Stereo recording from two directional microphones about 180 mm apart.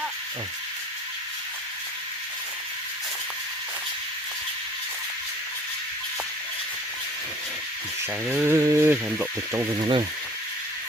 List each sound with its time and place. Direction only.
8.3 s speech: 15° right (ahead or behind)